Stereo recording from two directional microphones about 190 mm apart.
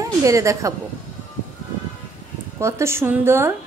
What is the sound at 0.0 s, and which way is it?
Speech, 15° right (ahead or behind).